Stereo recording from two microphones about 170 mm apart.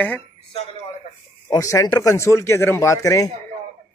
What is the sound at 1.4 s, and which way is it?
Speech, 20° left (ahead or behind).